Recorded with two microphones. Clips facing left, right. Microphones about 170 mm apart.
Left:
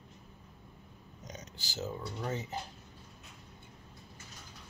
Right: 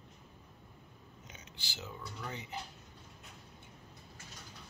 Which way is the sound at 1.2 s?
40° left (ahead or behind).